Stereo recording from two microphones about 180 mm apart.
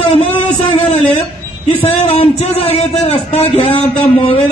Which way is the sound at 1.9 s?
35° left (ahead or behind).